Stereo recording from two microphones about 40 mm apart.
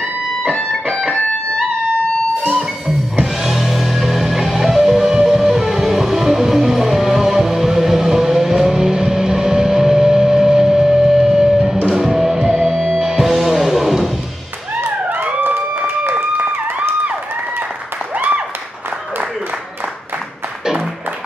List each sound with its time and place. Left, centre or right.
3.4 s music: centre
12.4 s music: centre
13.0 s music: centre
15.0 s police car: right
15.4 s run: right
18.1 s applause: right